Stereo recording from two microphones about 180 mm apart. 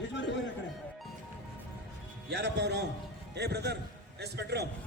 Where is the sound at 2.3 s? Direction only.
70° right (ahead or behind).